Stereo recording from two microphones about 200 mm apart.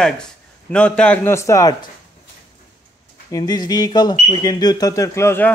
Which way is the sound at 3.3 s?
20° left (ahead or behind).